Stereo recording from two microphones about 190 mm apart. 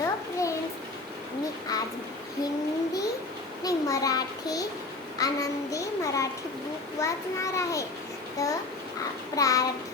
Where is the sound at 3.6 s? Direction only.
20° left (ahead or behind).